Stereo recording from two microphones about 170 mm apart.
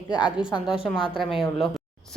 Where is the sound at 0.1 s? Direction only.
5° right (ahead or behind).